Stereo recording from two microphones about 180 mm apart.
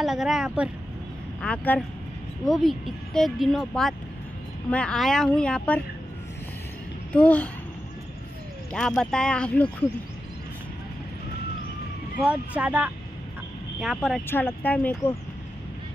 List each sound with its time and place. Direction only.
0.0 s speech: centre (ahead or behind)
1.4 s speech: 10° left (ahead or behind)
7.2 s speech: 5° left (ahead or behind)
8.7 s speech: 5° left (ahead or behind)
12.3 s speech: 10° right (ahead or behind)
14.2 s speech: 10° left (ahead or behind)